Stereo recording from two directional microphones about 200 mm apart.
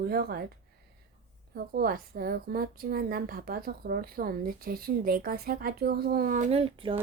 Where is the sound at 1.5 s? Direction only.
45° right (ahead or behind); by 7.0 s 25° right (ahead or behind).